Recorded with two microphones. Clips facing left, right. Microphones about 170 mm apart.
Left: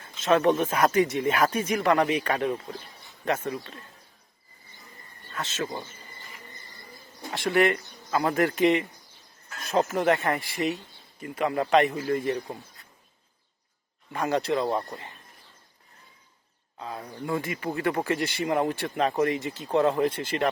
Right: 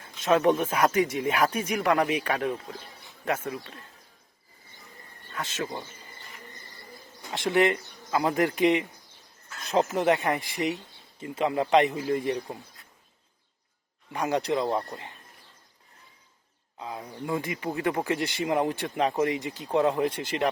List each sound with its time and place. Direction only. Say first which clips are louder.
0.2 s speech: left 1 dB; 10° right (ahead or behind)
2.4 s speech: left 2 dB; 5° left (ahead or behind)
3.2 s speech: left 2 dB; 10° right (ahead or behind)
5.3 s speech: left 1 dB; 10° right (ahead or behind)
7.3 s speech: even; 20° right (ahead or behind)
14.1 s speech: left 1 dB; 15° right (ahead or behind)
16.7 s speech: even; 15° right (ahead or behind)
17.4 s speech: left 1 dB; 15° right (ahead or behind)